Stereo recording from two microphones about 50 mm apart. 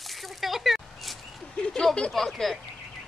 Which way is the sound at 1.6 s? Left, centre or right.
Centre.